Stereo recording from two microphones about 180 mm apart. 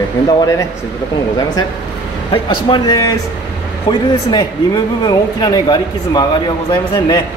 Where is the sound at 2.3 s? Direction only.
25° left (ahead or behind).